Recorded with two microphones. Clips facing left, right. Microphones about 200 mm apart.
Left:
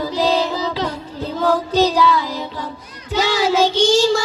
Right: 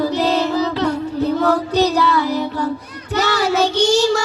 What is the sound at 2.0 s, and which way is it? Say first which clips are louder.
Child singing: right 1 dB; 65° right (ahead or behind).